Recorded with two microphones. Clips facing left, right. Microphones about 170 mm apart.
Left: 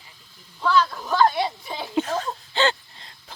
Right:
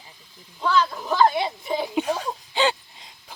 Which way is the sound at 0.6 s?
20° right (ahead or behind).